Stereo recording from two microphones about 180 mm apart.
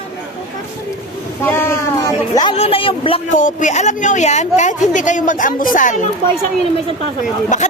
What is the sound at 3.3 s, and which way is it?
Speech, 45° left (ahead or behind).